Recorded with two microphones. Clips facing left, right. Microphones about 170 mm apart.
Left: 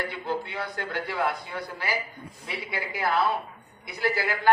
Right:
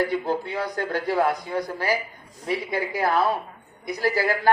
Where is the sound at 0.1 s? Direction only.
40° right (ahead or behind).